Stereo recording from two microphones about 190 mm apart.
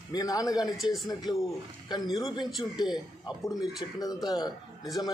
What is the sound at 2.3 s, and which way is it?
Speech, 20° left (ahead or behind).